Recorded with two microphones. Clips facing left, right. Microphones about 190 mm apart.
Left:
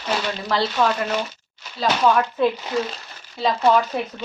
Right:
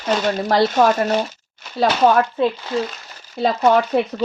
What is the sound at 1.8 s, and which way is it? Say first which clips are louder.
Speech: right 5 dB; 60° right (ahead or behind).